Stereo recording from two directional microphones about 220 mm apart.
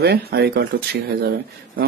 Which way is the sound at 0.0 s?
45° right (ahead or behind).